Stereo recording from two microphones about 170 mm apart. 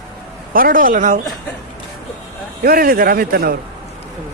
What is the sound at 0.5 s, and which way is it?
Speech, 55° right (ahead or behind).